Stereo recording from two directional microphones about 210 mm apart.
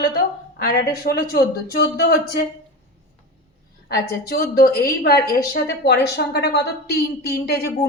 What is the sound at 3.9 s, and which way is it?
Speech, 45° left (ahead or behind).